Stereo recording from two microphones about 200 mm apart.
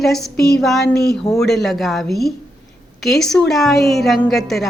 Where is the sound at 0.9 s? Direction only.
55° left (ahead or behind).